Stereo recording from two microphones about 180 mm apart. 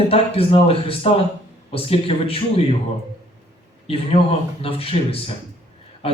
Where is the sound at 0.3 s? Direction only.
30° left (ahead or behind).